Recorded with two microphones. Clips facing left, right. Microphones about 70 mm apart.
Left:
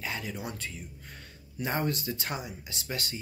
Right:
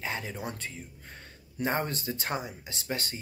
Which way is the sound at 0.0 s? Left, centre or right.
Right.